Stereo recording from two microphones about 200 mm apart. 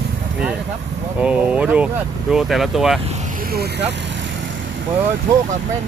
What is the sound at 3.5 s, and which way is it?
Speech, 50° right (ahead or behind).